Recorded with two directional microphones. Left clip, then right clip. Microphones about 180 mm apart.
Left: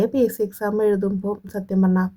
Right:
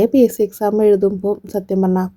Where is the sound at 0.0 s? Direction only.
30° right (ahead or behind).